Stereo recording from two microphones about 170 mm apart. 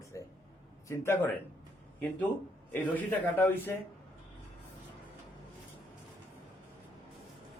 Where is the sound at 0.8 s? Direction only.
15° left (ahead or behind).